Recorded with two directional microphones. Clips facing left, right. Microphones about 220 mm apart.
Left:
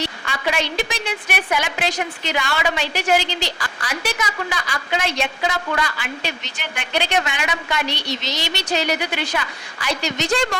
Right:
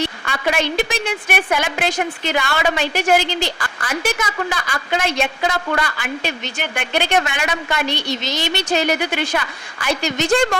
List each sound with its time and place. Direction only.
0.0 s a woman's voice: 50° right (ahead or behind)